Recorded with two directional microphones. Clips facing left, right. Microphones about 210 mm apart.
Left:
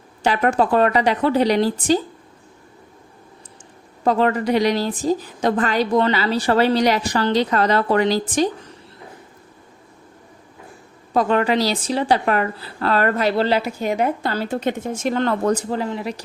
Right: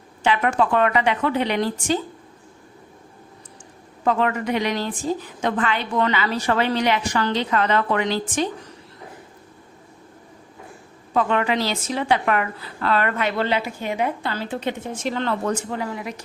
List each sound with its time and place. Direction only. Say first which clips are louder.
0.2 s a woman's voice: left 2 dB; 40° left (ahead or behind)
4.0 s a woman's voice: left 3 dB; 35° left (ahead or behind)
11.1 s a woman's voice: left 3 dB; 40° left (ahead or behind)